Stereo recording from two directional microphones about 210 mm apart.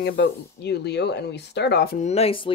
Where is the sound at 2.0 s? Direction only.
30° left (ahead or behind).